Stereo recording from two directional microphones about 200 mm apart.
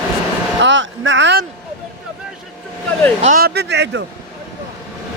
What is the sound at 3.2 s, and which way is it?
Speech, 35° right (ahead or behind).